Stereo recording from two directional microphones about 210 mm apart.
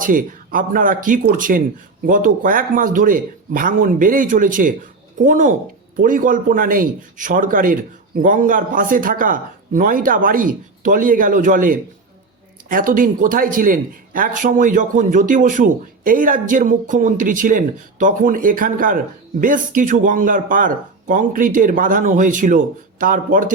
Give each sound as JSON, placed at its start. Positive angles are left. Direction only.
{"t": 0.0, "sound": "speech", "side_deg": -40}